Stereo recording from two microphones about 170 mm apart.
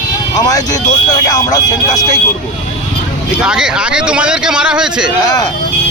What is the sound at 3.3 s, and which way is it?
Speech, 5° right (ahead or behind).